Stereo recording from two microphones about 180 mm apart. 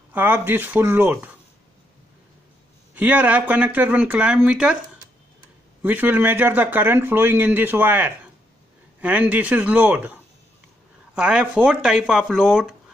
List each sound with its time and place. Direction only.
0.1 s speech: 10° right (ahead or behind)
2.9 s speech: 10° right (ahead or behind)
5.8 s speech: 10° right (ahead or behind)